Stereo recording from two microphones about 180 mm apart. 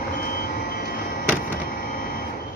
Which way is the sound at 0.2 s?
55° left (ahead or behind).